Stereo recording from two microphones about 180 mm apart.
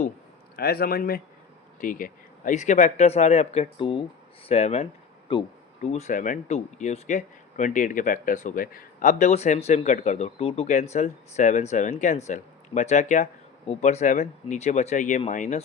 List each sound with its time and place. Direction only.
0.5 s speech: 60° left (ahead or behind); by 15.6 s 45° left (ahead or behind)